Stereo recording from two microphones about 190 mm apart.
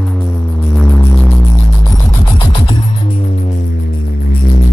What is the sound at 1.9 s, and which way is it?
Music, 15° left (ahead or behind).